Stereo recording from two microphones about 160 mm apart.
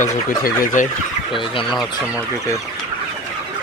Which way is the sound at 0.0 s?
55° left (ahead or behind).